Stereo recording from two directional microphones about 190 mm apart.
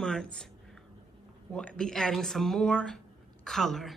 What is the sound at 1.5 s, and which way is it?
Speech, 5° left (ahead or behind).